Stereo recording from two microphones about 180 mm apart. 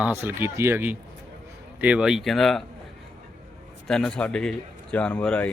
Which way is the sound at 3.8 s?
5° left (ahead or behind).